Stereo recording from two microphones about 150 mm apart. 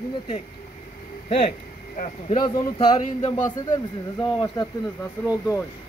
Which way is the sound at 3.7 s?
25° left (ahead or behind).